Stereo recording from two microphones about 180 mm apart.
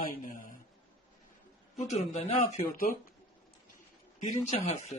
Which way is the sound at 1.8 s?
40° left (ahead or behind).